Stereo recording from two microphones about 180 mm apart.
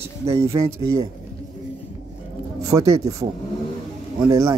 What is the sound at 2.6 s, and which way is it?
Speech, 20° right (ahead or behind).